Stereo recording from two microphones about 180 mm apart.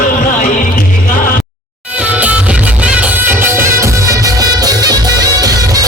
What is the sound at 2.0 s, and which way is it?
Music, 5° right (ahead or behind).